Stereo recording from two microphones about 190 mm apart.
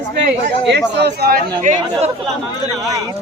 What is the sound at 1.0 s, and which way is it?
Speech, 55° right (ahead or behind).